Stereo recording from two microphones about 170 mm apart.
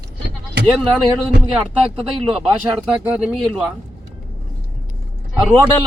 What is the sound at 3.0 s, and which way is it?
Speech, 5° right (ahead or behind).